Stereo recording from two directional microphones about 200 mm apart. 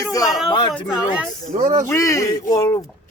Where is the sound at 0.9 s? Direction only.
5° right (ahead or behind).